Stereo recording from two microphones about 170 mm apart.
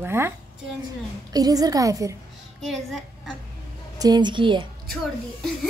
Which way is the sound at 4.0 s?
25° right (ahead or behind).